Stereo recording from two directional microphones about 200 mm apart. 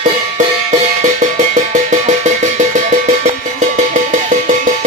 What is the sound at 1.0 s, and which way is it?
Music, 35° right (ahead or behind).